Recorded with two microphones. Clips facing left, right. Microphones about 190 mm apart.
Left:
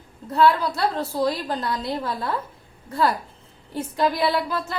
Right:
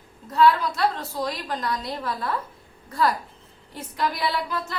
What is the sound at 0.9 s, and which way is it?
A woman's voice, 30° left (ahead or behind).